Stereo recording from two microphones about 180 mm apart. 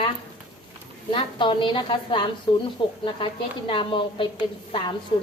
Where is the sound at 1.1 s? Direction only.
30° left (ahead or behind).